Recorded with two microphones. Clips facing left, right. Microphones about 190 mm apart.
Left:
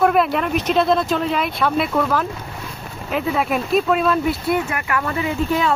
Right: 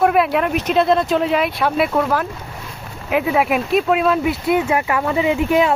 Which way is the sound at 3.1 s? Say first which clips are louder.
Right 3 dB; 10° right (ahead or behind).